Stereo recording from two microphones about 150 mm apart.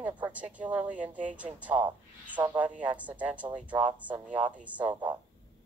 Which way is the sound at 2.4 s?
20° right (ahead or behind).